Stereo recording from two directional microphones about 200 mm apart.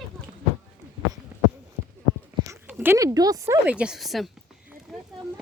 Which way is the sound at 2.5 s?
10° right (ahead or behind).